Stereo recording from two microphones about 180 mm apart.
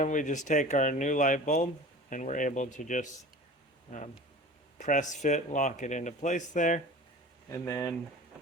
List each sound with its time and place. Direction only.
0.0 s speech: 45° left (ahead or behind)
4.8 s speech: 45° left (ahead or behind)
7.5 s speech: 15° left (ahead or behind)